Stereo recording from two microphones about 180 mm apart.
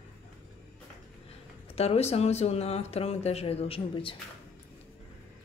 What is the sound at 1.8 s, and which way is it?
Speech, 35° left (ahead or behind).